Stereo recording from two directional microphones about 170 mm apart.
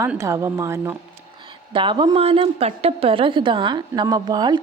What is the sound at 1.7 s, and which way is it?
A woman's voice, 30° right (ahead or behind).